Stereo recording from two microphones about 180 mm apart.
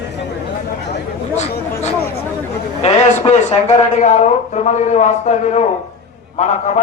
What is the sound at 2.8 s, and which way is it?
A man's voice, 35° left (ahead or behind).